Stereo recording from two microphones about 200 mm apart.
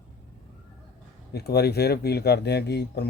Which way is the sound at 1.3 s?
55° left (ahead or behind).